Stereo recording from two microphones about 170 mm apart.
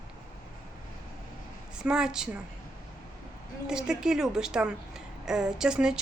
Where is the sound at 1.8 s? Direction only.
5° right (ahead or behind).